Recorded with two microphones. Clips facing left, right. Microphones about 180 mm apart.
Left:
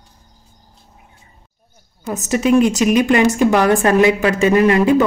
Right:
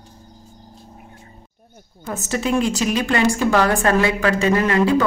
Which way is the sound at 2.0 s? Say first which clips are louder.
Left 6 dB; 15° left (ahead or behind).